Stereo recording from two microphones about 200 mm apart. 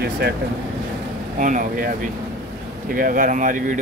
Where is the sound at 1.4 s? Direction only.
40° right (ahead or behind).